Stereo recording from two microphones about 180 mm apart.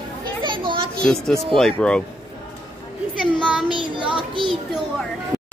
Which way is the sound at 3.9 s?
30° right (ahead or behind).